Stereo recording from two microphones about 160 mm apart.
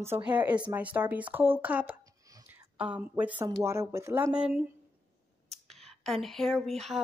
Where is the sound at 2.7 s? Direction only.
5° right (ahead or behind).